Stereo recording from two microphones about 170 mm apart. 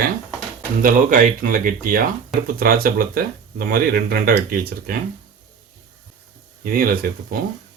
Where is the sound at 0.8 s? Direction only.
50° right (ahead or behind).